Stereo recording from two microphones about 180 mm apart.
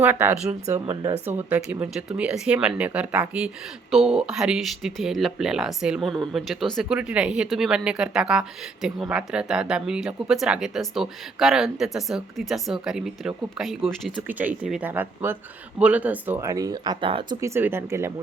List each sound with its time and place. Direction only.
0.0 s speech: 10° right (ahead or behind); by 17.3 s 30° right (ahead or behind)
17.4 s speech: 15° right (ahead or behind)